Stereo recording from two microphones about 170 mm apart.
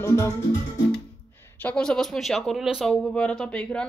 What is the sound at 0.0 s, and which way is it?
Music, 15° left (ahead or behind).